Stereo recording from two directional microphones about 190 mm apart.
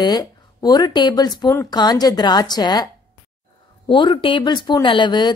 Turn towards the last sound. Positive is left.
turn(degrees=25)  # may be behind; listen again after turning